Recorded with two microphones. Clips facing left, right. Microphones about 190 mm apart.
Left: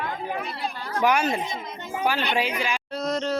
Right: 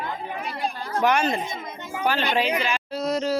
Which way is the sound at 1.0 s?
10° left (ahead or behind).